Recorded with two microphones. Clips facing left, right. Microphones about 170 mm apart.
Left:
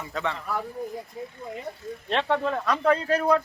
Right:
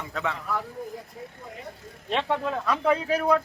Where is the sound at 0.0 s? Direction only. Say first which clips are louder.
Left 1 dB; centre (ahead or behind).